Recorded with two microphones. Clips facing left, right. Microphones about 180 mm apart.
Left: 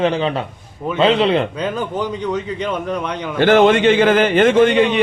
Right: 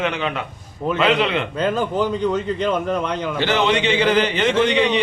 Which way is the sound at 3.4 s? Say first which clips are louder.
Left 9 dB; 50° left (ahead or behind).